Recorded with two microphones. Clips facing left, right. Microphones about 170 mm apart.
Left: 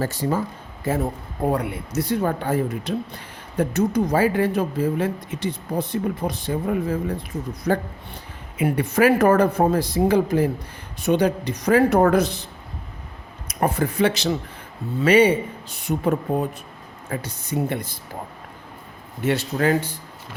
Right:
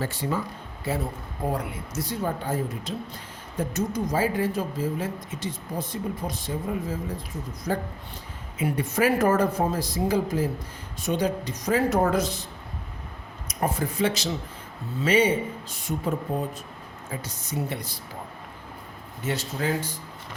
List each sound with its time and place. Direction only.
0.0 s a man's voice: 40° left (ahead or behind)
1.5 s speech: 65° left (ahead or behind)
7.7 s a man's voice: 70° left (ahead or behind)
13.5 s a man's voice: 65° left (ahead or behind)
19.2 s speech: 65° left (ahead or behind)